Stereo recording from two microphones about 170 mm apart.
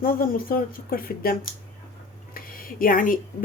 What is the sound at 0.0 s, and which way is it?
Speech, 60° left (ahead or behind).